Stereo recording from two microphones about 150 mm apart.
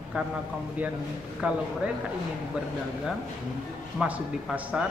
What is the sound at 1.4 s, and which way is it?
Speech, 10° right (ahead or behind).